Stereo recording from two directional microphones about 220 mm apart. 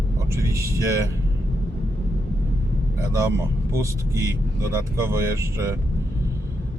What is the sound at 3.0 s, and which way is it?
A man's voice, 15° right (ahead or behind).